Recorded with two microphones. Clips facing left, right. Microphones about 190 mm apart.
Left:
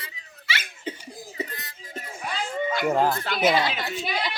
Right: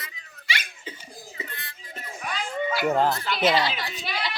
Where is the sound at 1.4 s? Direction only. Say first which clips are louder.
Left 6 dB; 40° left (ahead or behind).